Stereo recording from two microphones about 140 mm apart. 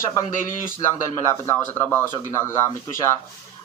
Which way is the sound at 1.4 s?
15° left (ahead or behind).